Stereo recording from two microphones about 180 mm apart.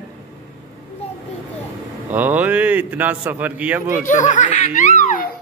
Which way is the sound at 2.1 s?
10° right (ahead or behind).